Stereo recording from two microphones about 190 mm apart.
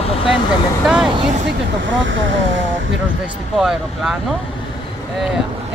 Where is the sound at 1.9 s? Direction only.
80° right.